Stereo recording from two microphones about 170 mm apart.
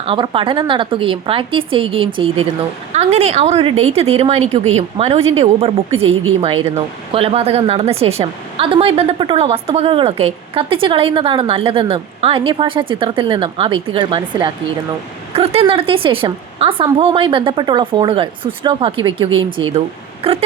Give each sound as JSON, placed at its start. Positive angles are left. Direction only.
{"t": 0.0, "sound": "a woman's voice", "side_deg": -30}
{"t": 15.3, "sound": "a woman's voice", "side_deg": -35}